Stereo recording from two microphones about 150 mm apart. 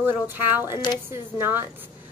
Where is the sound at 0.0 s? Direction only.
15° right (ahead or behind).